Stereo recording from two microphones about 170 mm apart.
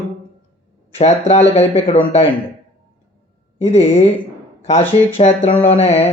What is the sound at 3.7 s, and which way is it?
Speech, 40° left (ahead or behind).